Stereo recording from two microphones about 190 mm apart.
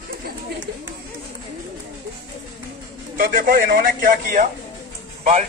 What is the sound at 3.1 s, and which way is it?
A man's voice, 50° right (ahead or behind).